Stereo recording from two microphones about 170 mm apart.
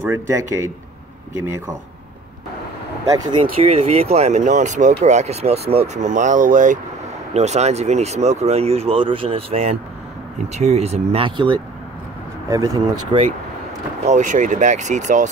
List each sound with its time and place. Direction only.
0.0 s speech: 15° right (ahead or behind)
3.6 s speech: 35° right (ahead or behind); by 13.2 s 20° right (ahead or behind)
14.0 s speech: 45° right (ahead or behind)